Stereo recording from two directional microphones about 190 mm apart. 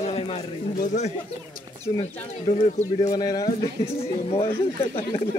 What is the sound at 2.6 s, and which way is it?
Speech, 40° left (ahead or behind).